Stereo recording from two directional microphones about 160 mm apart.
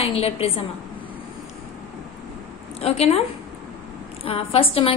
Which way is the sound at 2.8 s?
40° left (ahead or behind).